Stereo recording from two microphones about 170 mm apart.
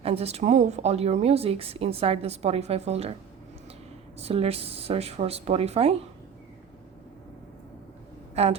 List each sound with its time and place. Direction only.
0.0 s speech: 35° right (ahead or behind)
4.2 s speech: 35° right (ahead or behind)
8.4 s speech: 35° right (ahead or behind)